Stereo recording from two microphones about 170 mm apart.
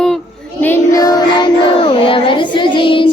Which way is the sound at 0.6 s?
15° left (ahead or behind).